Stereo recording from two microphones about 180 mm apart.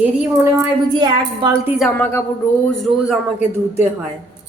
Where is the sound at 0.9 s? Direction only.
25° right (ahead or behind).